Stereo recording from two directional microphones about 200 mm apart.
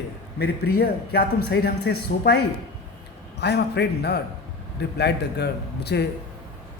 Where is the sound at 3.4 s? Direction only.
55° left (ahead or behind).